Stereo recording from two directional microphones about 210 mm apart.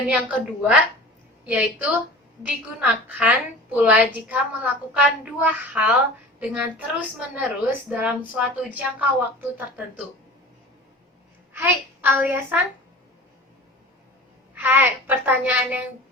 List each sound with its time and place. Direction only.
0.1 s a woman's voice: 5° right (ahead or behind)
11.5 s a child's voice: 10° right (ahead or behind)
14.5 s a woman's voice: 10° right (ahead or behind)